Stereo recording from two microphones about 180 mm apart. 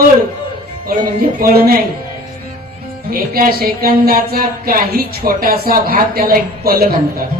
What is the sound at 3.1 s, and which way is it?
Speech, 55° right (ahead or behind).